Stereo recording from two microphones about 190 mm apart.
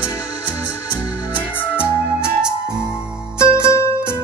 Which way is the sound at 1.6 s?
10° left (ahead or behind).